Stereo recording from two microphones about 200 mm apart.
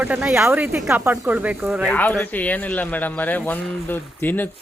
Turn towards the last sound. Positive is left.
turn(degrees=10)  # may be behind; listen again after turning